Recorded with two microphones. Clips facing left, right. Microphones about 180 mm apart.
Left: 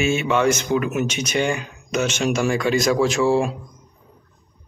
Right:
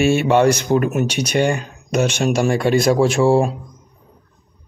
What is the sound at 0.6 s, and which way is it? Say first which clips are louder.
Speech: right 4 dB; 45° right (ahead or behind).